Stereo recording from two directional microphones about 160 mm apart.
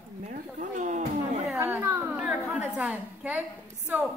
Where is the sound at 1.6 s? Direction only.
15° right (ahead or behind).